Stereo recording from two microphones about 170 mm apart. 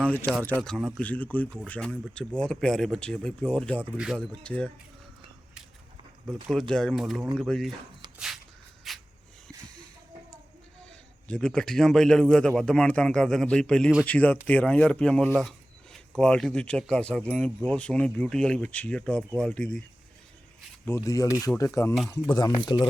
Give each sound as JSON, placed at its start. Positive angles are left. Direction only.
{"t": 0.0, "sound": "a man's voice", "side_deg": 10}
{"t": 3.9, "sound": "a man's voice", "side_deg": -5}
{"t": 4.4, "sound": "speech", "side_deg": 5}
{"t": 6.5, "sound": "a man's voice", "side_deg": 5}
{"t": 8.9, "sound": "a sound", "side_deg": 0}
{"t": 10.8, "sound": "a man's voice", "side_deg": 5}
{"t": 20.8, "sound": "speech", "side_deg": 15}
{"t": 22.5, "sound": "speech", "side_deg": 25}